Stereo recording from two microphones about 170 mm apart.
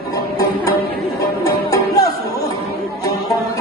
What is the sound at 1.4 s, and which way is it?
Music, 20° left (ahead or behind).